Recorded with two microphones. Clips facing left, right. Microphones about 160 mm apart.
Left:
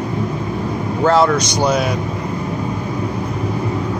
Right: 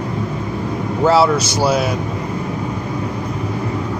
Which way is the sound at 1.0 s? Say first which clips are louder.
Even; 5° right (ahead or behind).